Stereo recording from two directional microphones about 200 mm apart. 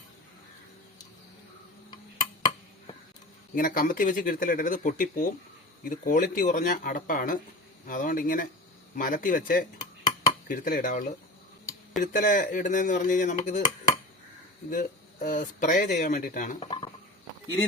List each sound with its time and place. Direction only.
3.5 s speech: 45° left (ahead or behind)
16.6 s speech: 25° left (ahead or behind)